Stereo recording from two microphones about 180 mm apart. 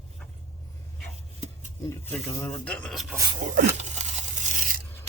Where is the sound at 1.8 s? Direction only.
15° left (ahead or behind).